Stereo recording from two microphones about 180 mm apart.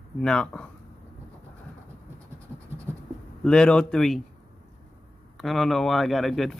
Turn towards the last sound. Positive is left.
turn(degrees=0)  # may be behind; listen again after turning